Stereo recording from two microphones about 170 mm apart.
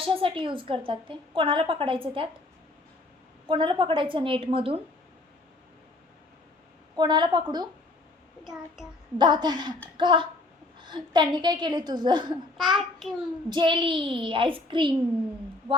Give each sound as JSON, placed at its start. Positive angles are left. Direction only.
{"t": 0.0, "sound": "a woman's voice", "side_deg": -30}
{"t": 3.4, "sound": "a woman's voice", "side_deg": -30}
{"t": 6.9, "sound": "a woman's voice", "side_deg": -25}
{"t": 8.4, "sound": "child singing", "side_deg": 0}
{"t": 9.1, "sound": "a woman's voice", "side_deg": -25}
{"t": 12.5, "sound": "a child's voice", "side_deg": 0}
{"t": 13.5, "sound": "a woman's voice", "side_deg": -30}